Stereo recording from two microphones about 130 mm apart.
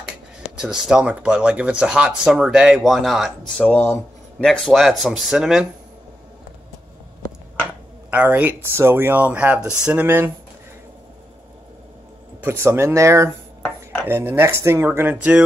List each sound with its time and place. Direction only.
0.6 s speech: 5° right (ahead or behind)
8.1 s speech: 15° right (ahead or behind)
12.4 s speech: 20° right (ahead or behind)